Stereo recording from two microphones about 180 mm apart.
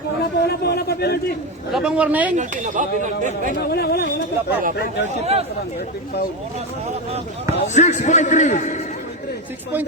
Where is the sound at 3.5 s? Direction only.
60° left (ahead or behind).